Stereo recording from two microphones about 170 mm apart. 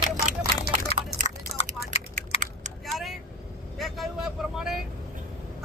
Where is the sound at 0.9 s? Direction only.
35° left (ahead or behind).